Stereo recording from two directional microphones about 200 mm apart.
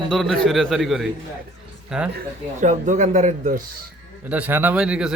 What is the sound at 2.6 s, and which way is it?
A man's voice, 40° right (ahead or behind).